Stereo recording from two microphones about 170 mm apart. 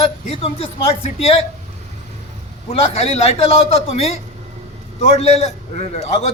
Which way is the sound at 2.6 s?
35° left (ahead or behind).